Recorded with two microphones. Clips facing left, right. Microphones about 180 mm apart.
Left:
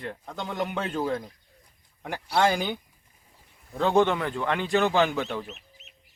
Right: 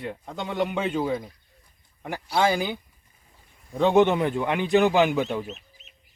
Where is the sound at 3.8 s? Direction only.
20° right (ahead or behind).